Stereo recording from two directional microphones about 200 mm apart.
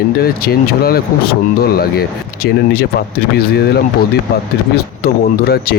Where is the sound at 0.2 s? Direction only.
50° left (ahead or behind).